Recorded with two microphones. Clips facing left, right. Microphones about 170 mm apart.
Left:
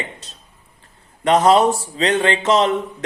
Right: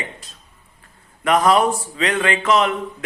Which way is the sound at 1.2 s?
25° left (ahead or behind).